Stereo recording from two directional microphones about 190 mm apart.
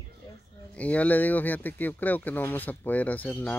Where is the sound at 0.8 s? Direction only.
5° left (ahead or behind).